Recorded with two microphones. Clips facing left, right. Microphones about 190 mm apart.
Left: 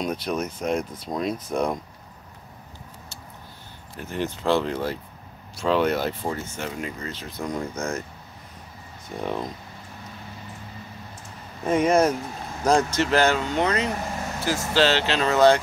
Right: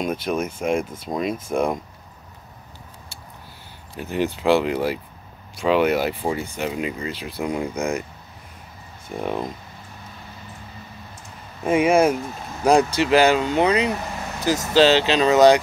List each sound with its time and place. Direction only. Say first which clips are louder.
0.0 s speech: right 3 dB; 5° right (ahead or behind)
3.9 s speech: right 5 dB; 15° right (ahead or behind)
9.1 s speech: right 3 dB; 5° right (ahead or behind)
11.6 s speech: right 3 dB; 10° right (ahead or behind)